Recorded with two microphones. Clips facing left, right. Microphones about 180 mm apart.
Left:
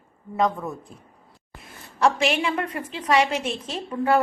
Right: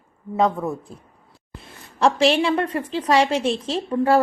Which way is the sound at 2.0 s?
30° right (ahead or behind).